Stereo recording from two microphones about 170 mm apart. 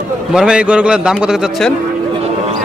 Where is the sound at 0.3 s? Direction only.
5° right (ahead or behind).